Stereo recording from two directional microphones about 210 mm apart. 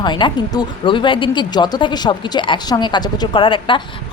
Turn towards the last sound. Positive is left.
turn(degrees=25)  # may be behind; listen again after turning